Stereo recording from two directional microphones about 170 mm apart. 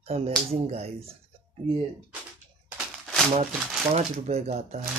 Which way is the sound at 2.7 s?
Centre (ahead or behind).